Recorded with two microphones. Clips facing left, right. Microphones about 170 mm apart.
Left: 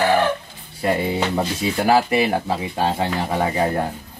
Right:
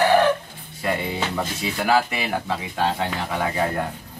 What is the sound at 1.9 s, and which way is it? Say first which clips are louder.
Speech: left 4 dB; 35° left (ahead or behind).